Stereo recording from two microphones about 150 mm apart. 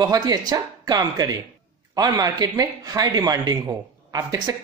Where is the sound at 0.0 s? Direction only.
25° right (ahead or behind).